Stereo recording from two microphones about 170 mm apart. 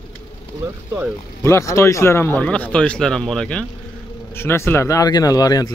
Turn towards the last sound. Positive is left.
turn(degrees=20)  # may be behind; listen again after turning